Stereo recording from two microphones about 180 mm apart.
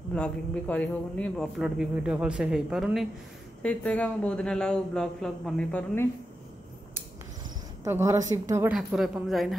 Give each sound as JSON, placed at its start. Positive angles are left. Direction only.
{"t": 0.1, "sound": "a man's voice", "side_deg": 5}
{"t": 7.8, "sound": "a woman's voice", "side_deg": -15}
{"t": 8.7, "sound": "speech", "side_deg": 0}